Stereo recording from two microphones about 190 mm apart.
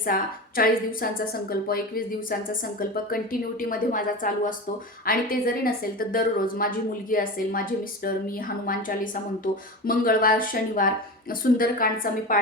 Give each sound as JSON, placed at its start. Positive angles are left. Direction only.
{"t": 0.0, "sound": "a woman's voice", "side_deg": 50}